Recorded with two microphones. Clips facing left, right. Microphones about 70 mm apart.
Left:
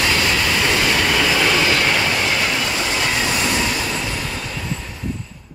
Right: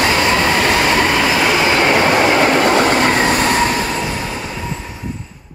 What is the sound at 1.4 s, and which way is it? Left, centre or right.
Train, right.